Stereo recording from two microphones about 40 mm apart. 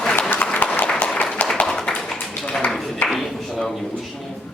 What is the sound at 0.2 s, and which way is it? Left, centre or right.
Applause, left.